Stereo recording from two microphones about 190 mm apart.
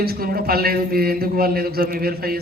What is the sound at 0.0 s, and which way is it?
Speech, 55° right (ahead or behind).